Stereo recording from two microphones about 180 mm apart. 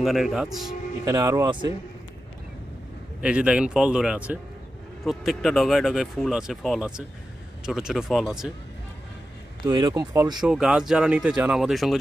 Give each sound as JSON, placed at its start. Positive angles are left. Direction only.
{"t": 0.0, "sound": "speech", "side_deg": 0}
{"t": 1.0, "sound": "speech", "side_deg": -20}
{"t": 3.2, "sound": "speech", "side_deg": -5}
{"t": 9.7, "sound": "speech", "side_deg": -20}
{"t": 10.4, "sound": "speech", "side_deg": -5}